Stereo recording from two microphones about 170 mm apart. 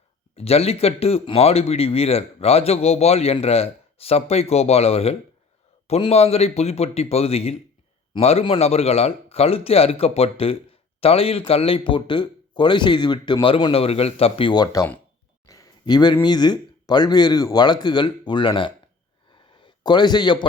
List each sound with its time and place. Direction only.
0.3 s a man's voice: 35° left (ahead or behind); by 14.9 s 20° left (ahead or behind)
15.4 s a sound: 20° left (ahead or behind)
16.2 s a man's voice: 25° left (ahead or behind)